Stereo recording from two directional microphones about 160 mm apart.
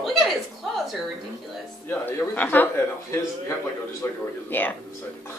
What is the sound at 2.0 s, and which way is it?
Speech, 10° left (ahead or behind).